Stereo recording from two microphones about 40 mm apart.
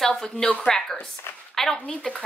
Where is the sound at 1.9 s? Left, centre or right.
Left.